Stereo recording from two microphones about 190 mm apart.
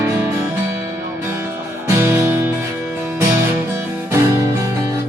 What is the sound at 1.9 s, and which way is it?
Music, 15° right (ahead or behind).